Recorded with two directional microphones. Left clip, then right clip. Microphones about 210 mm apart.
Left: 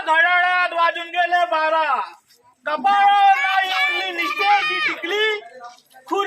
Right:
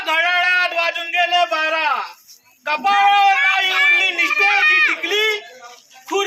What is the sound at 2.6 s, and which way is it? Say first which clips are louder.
Child singing: right 1 dB; 15° right (ahead or behind).